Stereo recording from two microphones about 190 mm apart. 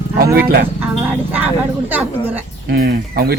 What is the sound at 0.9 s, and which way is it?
Speech, 10° right (ahead or behind).